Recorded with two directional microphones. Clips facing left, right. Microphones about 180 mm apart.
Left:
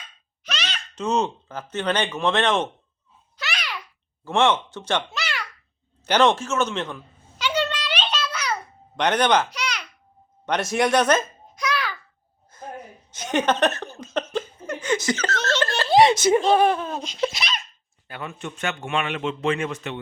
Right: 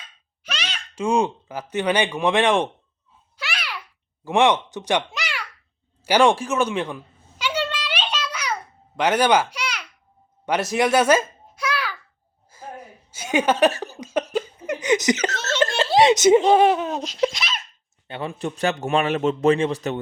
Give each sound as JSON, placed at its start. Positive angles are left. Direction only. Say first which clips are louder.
{"t": 0.4, "sound": "a sound", "louder": "even", "side_deg": -10}
{"t": 1.7, "sound": "speech", "louder": "right 3 dB", "side_deg": -10}
{"t": 3.3, "sound": "babbling", "louder": "even", "side_deg": -10}
{"t": 4.2, "sound": "a child's voice", "louder": "right 2 dB", "side_deg": -15}
{"t": 6.1, "sound": "a sound", "louder": "right 2 dB", "side_deg": -10}
{"t": 14.3, "sound": "chuckle", "louder": "right 3 dB", "side_deg": -15}
{"t": 15.4, "sound": "laughter", "louder": "left 1 dB", "side_deg": -10}
{"t": 16.0, "sound": "speech", "louder": "right 2 dB", "side_deg": -20}
{"t": 17.0, "sound": "speech", "louder": "right 4 dB", "side_deg": 0}
{"t": 17.3, "sound": "laughter", "louder": "even", "side_deg": -5}
{"t": 18.1, "sound": "a man's voice", "louder": "right 6 dB", "side_deg": -30}